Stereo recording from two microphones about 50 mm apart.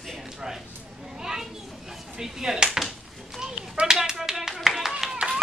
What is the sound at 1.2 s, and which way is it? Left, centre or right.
Children playing, centre.